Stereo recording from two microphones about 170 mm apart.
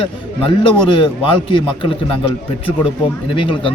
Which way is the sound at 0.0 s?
30° left (ahead or behind).